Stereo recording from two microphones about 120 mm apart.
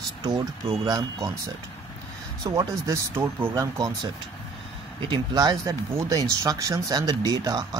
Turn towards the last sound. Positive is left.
turn(degrees=-30)  # may be behind; listen again after turning